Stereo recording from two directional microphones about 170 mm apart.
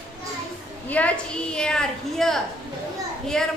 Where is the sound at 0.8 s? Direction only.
10° left (ahead or behind).